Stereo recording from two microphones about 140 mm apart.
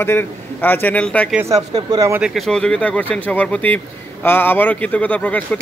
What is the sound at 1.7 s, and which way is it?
Speech, 25° right (ahead or behind).